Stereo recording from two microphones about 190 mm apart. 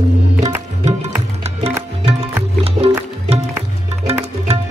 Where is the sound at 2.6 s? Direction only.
35° right (ahead or behind).